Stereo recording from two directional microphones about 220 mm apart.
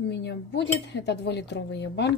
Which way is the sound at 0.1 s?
50° left (ahead or behind).